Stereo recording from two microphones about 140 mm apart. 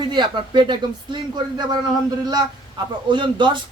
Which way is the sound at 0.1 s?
35° right (ahead or behind).